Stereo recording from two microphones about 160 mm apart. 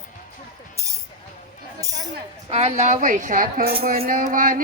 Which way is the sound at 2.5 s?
40° right (ahead or behind).